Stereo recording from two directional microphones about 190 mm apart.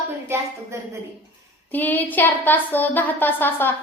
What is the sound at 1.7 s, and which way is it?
A woman's voice, 10° left (ahead or behind).